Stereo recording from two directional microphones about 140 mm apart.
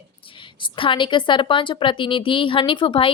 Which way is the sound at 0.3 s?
35° left (ahead or behind).